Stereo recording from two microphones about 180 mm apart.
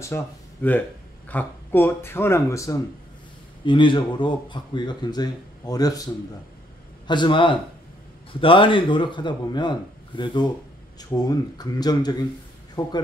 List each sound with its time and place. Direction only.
0.0 s speech: 10° left (ahead or behind)
7.1 s speech: 25° left (ahead or behind)